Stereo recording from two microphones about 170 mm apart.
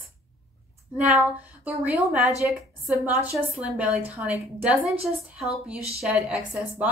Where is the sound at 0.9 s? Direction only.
10° right (ahead or behind).